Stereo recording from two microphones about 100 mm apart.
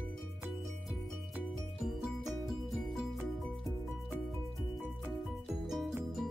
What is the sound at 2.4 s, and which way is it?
Music, centre (ahead or behind).